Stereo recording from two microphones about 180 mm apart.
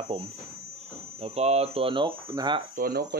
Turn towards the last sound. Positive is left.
turn(degrees=-60)  # may be behind; listen again after turning